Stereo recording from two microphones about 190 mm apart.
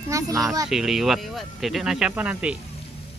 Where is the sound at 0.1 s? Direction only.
15° right (ahead or behind).